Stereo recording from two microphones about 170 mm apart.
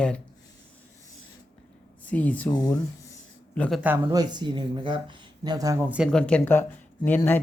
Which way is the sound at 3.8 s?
15° right (ahead or behind).